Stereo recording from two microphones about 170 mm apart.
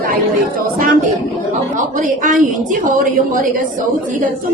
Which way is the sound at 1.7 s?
50° right (ahead or behind).